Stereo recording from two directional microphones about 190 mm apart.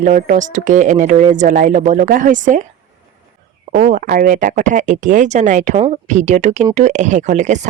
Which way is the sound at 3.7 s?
45° right (ahead or behind).